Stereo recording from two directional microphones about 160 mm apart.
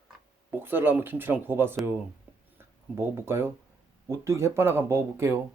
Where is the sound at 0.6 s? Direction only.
15° right (ahead or behind).